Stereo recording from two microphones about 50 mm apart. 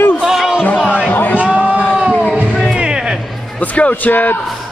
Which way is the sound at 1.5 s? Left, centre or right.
Right.